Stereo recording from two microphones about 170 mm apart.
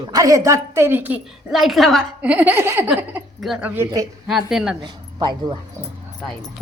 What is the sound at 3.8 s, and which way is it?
Speech, 20° right (ahead or behind).